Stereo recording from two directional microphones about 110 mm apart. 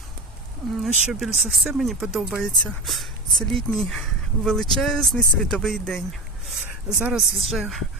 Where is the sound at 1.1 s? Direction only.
Centre (ahead or behind).